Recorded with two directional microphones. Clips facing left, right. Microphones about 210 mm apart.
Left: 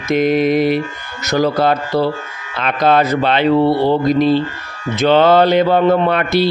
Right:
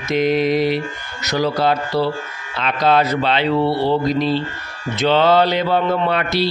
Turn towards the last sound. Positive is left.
turn(degrees=50)  # may be behind; listen again after turning